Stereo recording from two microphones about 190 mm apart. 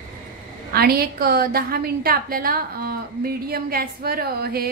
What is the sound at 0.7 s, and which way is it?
A woman's voice, 55° right (ahead or behind).